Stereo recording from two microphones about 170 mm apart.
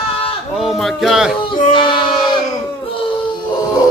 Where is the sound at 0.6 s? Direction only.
Centre (ahead or behind).